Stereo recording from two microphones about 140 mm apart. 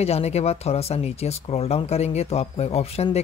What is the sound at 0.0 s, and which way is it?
Speech, 50° left (ahead or behind).